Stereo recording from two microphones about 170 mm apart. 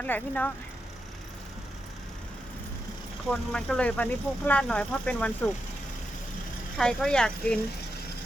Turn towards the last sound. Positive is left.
turn(degrees=5)  # may be behind; listen again after turning